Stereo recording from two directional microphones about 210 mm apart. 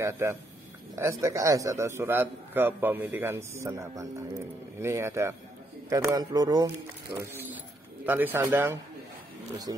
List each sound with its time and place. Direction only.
0.0 s a man's voice: 10° right (ahead or behind)